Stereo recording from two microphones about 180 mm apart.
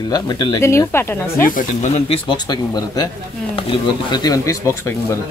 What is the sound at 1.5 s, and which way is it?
Speech, 45° left (ahead or behind).